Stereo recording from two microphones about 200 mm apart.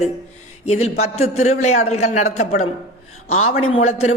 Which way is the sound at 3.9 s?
30° left (ahead or behind).